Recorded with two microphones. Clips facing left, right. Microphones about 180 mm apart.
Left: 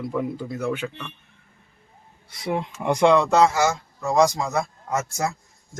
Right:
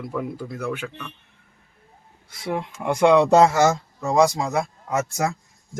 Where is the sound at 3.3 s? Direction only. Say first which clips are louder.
Right 3 dB; 45° right (ahead or behind).